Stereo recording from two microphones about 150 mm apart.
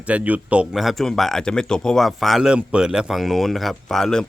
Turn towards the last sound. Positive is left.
turn(degrees=5)  # may be behind; listen again after turning